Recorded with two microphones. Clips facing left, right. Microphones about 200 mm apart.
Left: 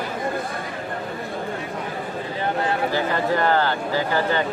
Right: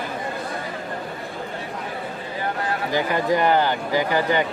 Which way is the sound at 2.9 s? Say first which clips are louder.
Right 1 dB; 15° right (ahead or behind).